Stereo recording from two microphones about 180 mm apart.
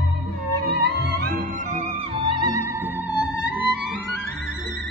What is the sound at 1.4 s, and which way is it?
Music, 45° right (ahead or behind).